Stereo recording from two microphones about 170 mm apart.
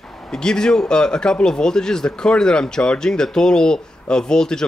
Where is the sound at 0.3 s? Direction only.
5° left (ahead or behind).